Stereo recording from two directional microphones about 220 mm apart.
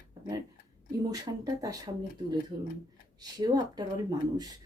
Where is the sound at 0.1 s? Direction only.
15° right (ahead or behind).